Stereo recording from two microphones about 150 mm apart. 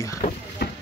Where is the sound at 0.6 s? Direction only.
90° left.